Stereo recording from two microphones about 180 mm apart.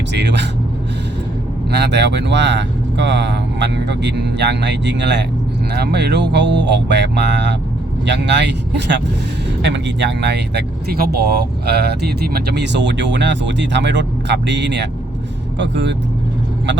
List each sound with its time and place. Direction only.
0.1 s speech: 70° right (ahead or behind)
1.7 s speech: 70° right (ahead or behind)
5.7 s speech: 65° right (ahead or behind)